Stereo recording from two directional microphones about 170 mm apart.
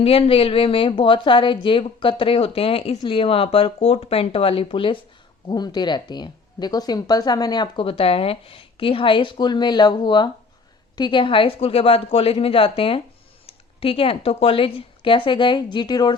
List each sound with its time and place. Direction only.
0.0 s speech: 35° left (ahead or behind)